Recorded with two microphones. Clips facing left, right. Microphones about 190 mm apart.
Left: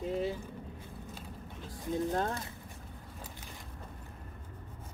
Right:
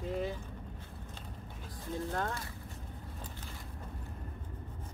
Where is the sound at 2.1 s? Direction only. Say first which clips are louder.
Left 3 dB; 20° left (ahead or behind).